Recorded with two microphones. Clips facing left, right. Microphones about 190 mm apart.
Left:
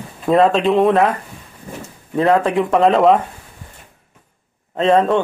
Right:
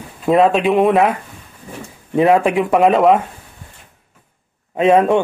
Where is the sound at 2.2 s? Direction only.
15° right (ahead or behind).